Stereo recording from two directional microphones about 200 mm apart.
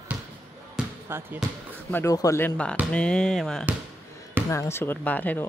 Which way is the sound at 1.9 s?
15° left (ahead or behind).